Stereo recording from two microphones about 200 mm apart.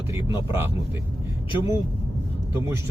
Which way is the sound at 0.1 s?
10° right (ahead or behind).